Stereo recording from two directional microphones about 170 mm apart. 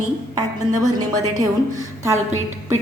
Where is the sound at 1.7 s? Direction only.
15° right (ahead or behind).